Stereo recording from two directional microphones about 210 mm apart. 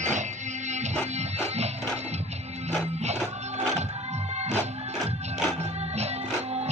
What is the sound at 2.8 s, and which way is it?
Music, 30° right (ahead or behind).